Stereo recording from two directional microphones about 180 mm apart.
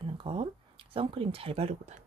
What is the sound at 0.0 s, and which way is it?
Speech, 30° right (ahead or behind).